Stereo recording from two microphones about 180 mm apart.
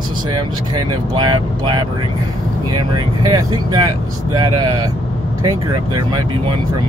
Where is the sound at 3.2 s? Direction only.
20° right (ahead or behind).